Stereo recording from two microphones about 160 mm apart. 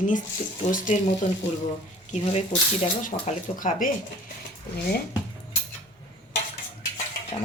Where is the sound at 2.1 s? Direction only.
45° left (ahead or behind).